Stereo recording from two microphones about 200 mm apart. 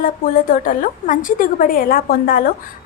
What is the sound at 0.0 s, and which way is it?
Speech, 45° left (ahead or behind).